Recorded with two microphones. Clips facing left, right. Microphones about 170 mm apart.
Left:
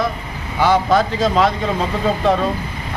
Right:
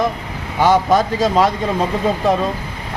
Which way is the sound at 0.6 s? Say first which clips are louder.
Right 1 dB; 15° right (ahead or behind).